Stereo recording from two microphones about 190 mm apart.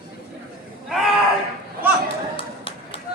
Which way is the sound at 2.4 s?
30° left (ahead or behind).